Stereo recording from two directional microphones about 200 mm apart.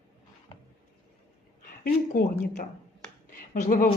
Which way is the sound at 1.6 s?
45° left (ahead or behind).